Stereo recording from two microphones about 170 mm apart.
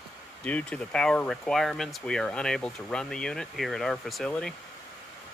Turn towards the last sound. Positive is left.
turn(degrees=5)  # may be behind; listen again after turning